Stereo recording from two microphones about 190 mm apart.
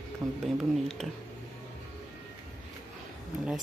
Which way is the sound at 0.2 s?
20° right (ahead or behind).